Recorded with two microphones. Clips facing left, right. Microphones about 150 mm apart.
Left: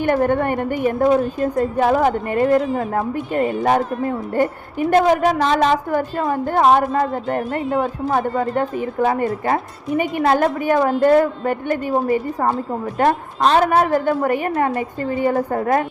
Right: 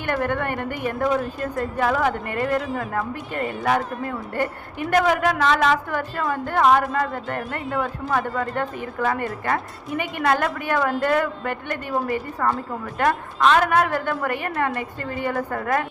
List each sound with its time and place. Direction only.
0.0 s a woman's voice: 45° left (ahead or behind)
10.3 s a woman's voice: 45° left (ahead or behind)